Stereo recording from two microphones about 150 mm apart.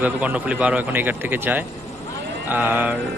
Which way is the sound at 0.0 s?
10° right (ahead or behind).